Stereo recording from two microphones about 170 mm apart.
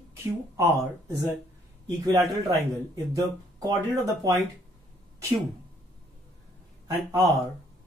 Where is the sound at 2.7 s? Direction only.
Centre (ahead or behind).